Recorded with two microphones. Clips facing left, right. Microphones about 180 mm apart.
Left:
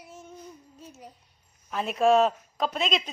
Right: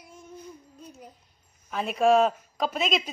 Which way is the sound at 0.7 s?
5° left (ahead or behind).